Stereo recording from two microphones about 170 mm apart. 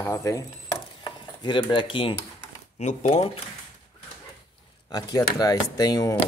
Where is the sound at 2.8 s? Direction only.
45° left (ahead or behind).